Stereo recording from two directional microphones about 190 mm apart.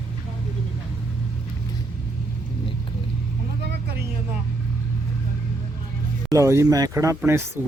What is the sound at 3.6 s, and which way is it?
Vehicle, 55° right (ahead or behind).